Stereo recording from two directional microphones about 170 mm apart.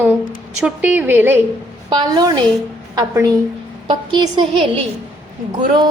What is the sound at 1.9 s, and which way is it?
A woman's voice, 20° right (ahead or behind).